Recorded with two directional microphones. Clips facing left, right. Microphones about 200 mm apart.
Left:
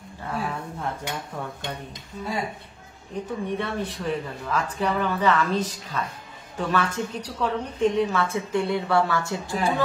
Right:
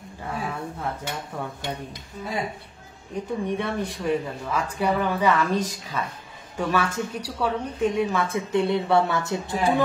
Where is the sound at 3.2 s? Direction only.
15° right (ahead or behind).